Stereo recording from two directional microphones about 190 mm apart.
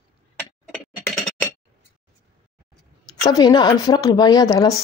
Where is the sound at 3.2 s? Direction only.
20° left (ahead or behind).